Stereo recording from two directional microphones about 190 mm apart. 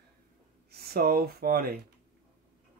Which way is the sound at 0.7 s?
55° right (ahead or behind).